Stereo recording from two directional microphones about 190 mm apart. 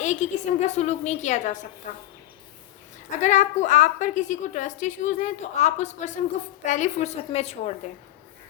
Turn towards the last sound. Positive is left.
turn(degrees=35)  # may be behind; listen again after turning